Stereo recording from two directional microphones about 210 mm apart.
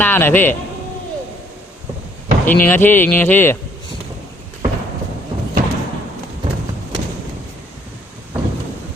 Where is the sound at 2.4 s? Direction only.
10° left (ahead or behind).